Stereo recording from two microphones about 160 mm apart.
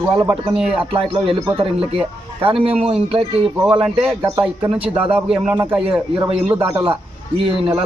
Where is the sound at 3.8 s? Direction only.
5° right (ahead or behind).